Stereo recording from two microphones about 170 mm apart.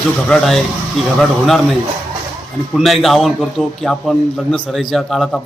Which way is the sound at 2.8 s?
Centre (ahead or behind).